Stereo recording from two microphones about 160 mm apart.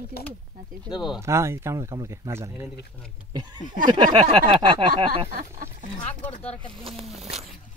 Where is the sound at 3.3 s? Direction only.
30° right (ahead or behind).